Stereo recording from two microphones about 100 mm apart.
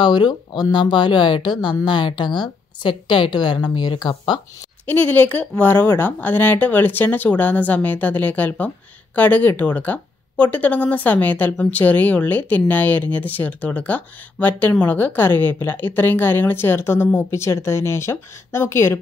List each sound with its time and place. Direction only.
0.0 s a woman's voice: 45° left (ahead or behind)
4.8 s a woman's voice: 15° left (ahead or behind)